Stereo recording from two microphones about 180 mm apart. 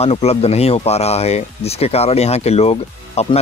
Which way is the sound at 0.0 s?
35° left (ahead or behind).